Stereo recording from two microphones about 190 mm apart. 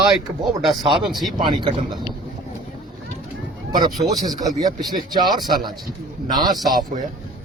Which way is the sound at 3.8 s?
20° right (ahead or behind).